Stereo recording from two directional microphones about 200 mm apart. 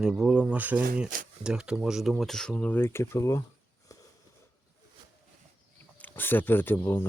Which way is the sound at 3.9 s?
15° left (ahead or behind).